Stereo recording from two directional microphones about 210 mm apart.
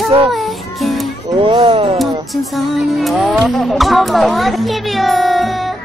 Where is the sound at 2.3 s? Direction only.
Centre (ahead or behind).